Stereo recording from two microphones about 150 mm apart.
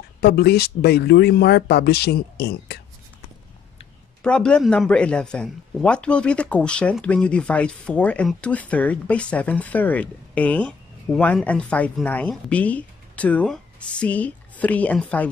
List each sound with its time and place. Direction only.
0.2 s speech: 90° left
4.2 s speech: 5° left (ahead or behind)